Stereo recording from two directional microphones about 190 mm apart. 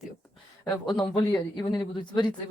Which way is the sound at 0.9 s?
20° left (ahead or behind).